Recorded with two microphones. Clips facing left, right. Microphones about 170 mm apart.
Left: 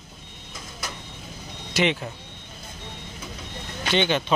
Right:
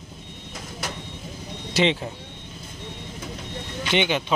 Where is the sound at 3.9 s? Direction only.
15° right (ahead or behind).